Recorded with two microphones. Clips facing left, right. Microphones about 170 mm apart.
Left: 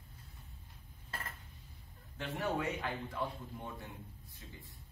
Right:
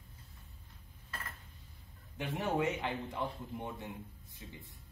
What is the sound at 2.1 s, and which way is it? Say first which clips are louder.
A man's voice: right 3 dB; 20° right (ahead or behind).